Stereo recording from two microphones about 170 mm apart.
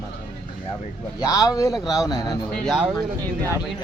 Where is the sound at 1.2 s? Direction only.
20° left (ahead or behind).